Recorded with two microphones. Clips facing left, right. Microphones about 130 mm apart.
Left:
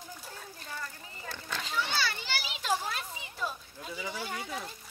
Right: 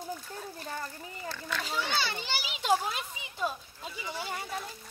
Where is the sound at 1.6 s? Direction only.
35° right (ahead or behind).